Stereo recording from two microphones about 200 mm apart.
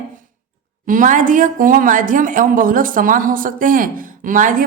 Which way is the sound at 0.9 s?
40° right (ahead or behind).